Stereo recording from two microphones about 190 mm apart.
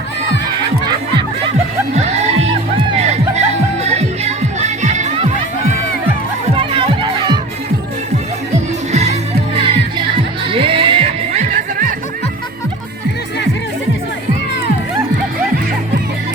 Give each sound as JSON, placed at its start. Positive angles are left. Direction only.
{"t": 2.0, "sound": "music", "side_deg": -35}
{"t": 6.6, "sound": "music", "side_deg": -25}
{"t": 8.9, "sound": "music", "side_deg": -35}
{"t": 11.5, "sound": "music", "side_deg": -45}